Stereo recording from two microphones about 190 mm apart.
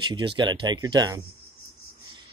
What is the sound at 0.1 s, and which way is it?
Speech, 25° right (ahead or behind).